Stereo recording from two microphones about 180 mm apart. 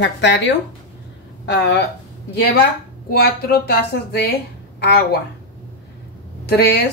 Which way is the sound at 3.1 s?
60° left (ahead or behind).